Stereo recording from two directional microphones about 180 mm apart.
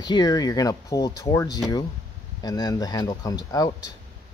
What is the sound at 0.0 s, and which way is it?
Speech, 20° left (ahead or behind).